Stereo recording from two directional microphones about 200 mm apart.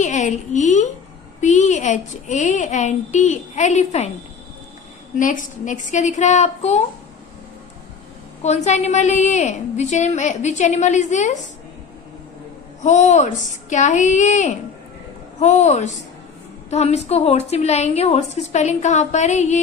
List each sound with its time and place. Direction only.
0.0 s a woman's voice: 35° left (ahead or behind)
5.2 s a woman's voice: 40° left (ahead or behind)
8.4 s a woman's voice: 35° left (ahead or behind)
12.8 s a woman's voice: 35° left (ahead or behind)